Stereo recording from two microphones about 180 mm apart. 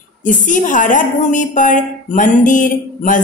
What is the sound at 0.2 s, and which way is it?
A woman's voice, 45° left (ahead or behind).